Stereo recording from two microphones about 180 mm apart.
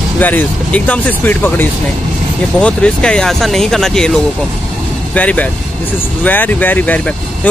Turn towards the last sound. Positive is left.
turn(degrees=10)  # may be behind; listen again after turning